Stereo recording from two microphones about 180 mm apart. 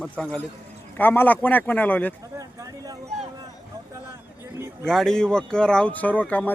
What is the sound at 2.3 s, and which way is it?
Speech, 20° right (ahead or behind).